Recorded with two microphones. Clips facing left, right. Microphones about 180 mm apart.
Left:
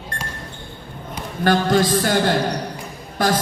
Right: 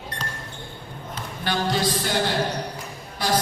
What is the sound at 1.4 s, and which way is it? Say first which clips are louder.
Speech: left 7 dB; 50° left (ahead or behind).